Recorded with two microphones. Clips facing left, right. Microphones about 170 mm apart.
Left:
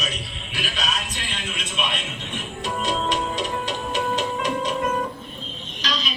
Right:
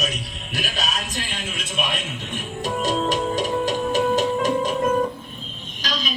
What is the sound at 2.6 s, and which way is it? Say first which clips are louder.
Music: right 3 dB; 45° right (ahead or behind).